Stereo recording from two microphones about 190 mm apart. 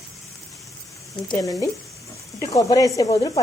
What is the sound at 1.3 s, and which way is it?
Speech, 15° left (ahead or behind).